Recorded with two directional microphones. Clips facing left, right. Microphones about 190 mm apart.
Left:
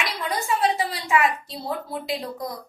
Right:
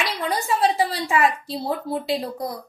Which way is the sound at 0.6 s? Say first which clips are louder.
Right 3 dB; 30° right (ahead or behind).